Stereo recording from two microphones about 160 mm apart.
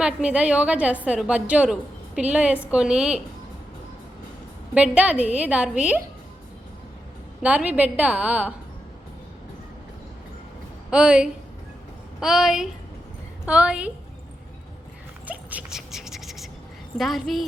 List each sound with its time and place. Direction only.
0.0 s a woman's voice: 5° right (ahead or behind)
4.7 s a woman's voice: 10° right (ahead or behind)
7.4 s a woman's voice: 10° right (ahead or behind)
10.9 s a woman's voice: 5° right (ahead or behind)
15.3 s a sound: 10° right (ahead or behind)
17.0 s a woman's voice: centre (ahead or behind)